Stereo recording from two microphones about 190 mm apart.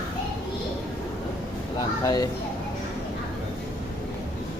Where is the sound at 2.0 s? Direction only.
20° left (ahead or behind).